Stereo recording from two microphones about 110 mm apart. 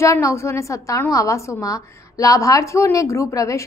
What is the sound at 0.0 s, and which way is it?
A woman's voice, 30° left (ahead or behind).